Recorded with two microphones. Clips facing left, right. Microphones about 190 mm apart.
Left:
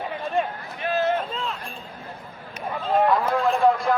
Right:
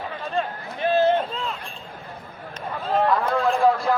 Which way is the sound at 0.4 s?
15° left (ahead or behind).